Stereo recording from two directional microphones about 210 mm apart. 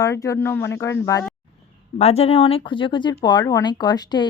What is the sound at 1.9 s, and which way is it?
Speech, 30° left (ahead or behind).